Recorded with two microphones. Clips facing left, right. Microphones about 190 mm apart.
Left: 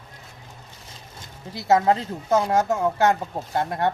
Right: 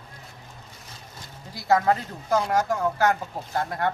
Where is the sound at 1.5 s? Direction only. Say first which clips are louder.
Left 2 dB; 25° left (ahead or behind).